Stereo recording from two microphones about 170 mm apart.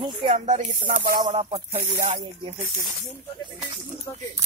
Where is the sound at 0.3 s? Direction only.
50° right (ahead or behind).